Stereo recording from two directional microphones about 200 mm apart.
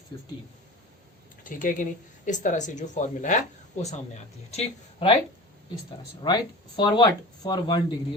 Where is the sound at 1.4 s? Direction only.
40° left (ahead or behind).